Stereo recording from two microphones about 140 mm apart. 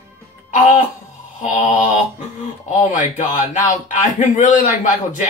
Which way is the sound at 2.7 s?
60° left (ahead or behind).